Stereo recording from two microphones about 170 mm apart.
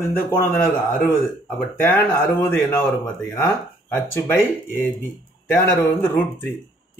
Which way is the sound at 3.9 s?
10° left (ahead or behind).